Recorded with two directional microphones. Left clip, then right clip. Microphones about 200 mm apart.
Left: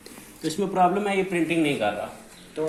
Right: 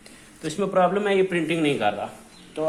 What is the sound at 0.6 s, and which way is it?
Speech, 40° right (ahead or behind).